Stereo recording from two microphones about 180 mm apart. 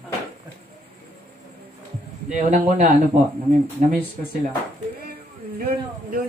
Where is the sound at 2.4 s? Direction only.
40° right (ahead or behind).